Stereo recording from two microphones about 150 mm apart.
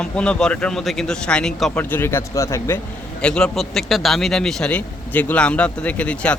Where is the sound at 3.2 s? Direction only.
5° left (ahead or behind).